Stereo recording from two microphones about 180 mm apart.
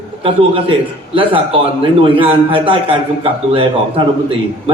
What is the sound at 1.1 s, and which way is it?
A man's voice, 30° right (ahead or behind).